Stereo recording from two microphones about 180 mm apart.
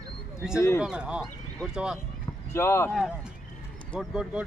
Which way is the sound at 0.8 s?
5° right (ahead or behind).